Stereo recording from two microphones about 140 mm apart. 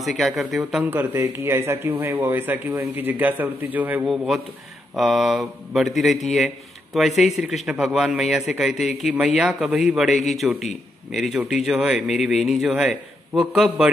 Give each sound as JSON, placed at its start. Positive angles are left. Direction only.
{"t": 0.0, "sound": "a man's voice", "side_deg": 0}
{"t": 4.9, "sound": "a man's voice", "side_deg": 0}